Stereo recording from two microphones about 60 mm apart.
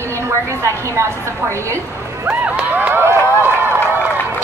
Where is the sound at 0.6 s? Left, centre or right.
Right.